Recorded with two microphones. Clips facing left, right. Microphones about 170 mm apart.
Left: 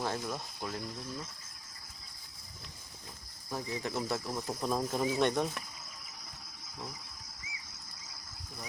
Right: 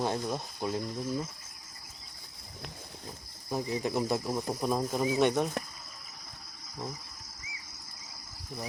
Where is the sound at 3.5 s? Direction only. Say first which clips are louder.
Right 5 dB; 15° right (ahead or behind).